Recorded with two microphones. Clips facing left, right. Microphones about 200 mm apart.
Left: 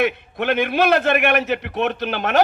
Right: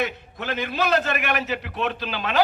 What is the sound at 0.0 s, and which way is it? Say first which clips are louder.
A man's voice: left 7 dB; 60° left (ahead or behind).